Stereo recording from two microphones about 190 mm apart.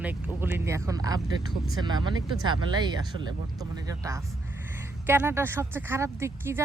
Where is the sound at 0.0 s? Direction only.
10° right (ahead or behind).